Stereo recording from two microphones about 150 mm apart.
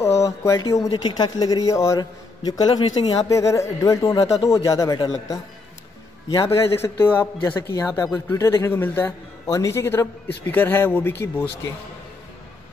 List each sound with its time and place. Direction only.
0.2 s a man's voice: 20° left (ahead or behind)